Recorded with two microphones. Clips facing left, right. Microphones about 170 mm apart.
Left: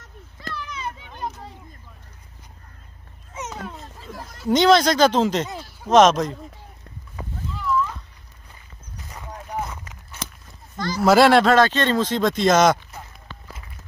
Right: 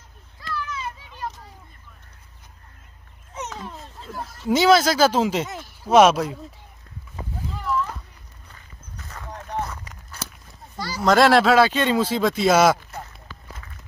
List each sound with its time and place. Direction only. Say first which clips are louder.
3.5 s a child's voice: left 1 dB; 70° left (ahead or behind)
4.2 s speech: left 1 dB; 5° right (ahead or behind)
7.5 s clip-clop: left 2 dB; 45° right (ahead or behind)
9.1 s a sound: right 1 dB; 10° left (ahead or behind)
11.0 s speech: left 2 dB; 5° left (ahead or behind)